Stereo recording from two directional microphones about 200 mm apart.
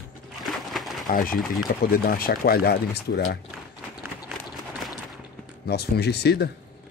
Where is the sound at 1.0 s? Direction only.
45° left (ahead or behind).